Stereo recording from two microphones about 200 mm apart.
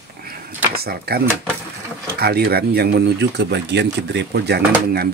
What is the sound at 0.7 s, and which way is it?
Speech, 50° right (ahead or behind).